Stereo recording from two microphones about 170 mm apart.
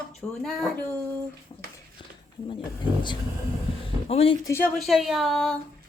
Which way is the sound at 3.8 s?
35° left (ahead or behind).